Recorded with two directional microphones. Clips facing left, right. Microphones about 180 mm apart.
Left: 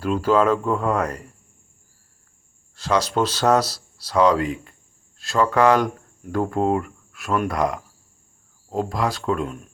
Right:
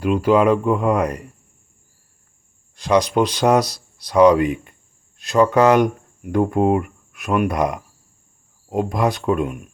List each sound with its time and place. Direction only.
0.0 s speech: 15° right (ahead or behind)
2.7 s speech: 15° right (ahead or behind)